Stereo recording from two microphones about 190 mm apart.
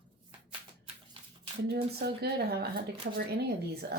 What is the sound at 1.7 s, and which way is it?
Speech, 55° right (ahead or behind).